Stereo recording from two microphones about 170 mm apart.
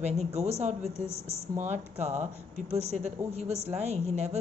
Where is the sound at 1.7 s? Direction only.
40° right (ahead or behind).